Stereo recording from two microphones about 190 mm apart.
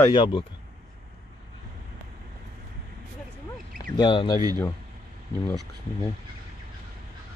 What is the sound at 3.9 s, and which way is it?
Speech, 20° left (ahead or behind).